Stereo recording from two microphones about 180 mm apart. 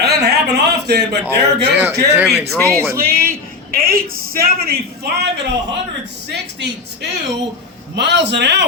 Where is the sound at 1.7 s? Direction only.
15° right (ahead or behind).